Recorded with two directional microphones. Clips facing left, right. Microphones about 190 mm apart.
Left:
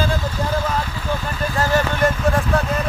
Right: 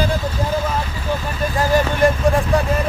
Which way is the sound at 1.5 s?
15° right (ahead or behind).